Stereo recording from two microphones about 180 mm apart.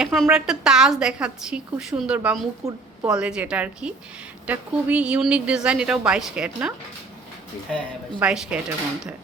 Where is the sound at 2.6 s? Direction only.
35° right (ahead or behind).